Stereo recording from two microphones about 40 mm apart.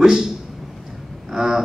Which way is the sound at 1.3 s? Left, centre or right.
Centre.